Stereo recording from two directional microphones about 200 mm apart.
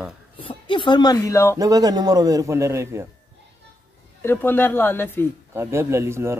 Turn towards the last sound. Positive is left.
turn(degrees=-15)  # may be behind; listen again after turning